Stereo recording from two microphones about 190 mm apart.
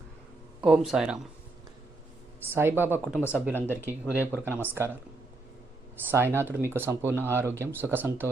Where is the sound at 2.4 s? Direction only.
10° right (ahead or behind).